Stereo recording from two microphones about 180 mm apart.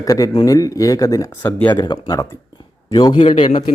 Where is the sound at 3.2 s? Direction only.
35° left (ahead or behind).